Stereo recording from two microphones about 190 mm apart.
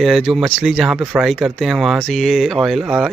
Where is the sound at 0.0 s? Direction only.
Centre (ahead or behind).